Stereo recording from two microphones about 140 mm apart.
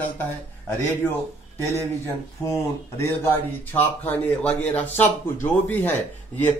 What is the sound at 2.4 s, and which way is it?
Speech, 20° left (ahead or behind).